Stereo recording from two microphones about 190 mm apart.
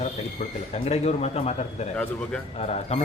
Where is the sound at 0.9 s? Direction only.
35° left (ahead or behind).